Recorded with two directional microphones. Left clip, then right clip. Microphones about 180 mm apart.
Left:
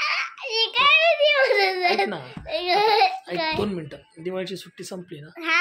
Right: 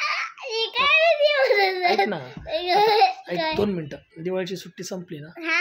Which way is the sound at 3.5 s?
40° right (ahead or behind).